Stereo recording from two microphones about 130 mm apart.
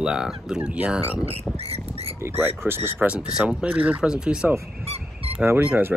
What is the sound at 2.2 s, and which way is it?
Speech, 15° right (ahead or behind).